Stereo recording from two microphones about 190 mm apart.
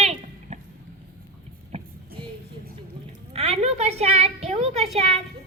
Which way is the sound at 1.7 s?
30° right (ahead or behind).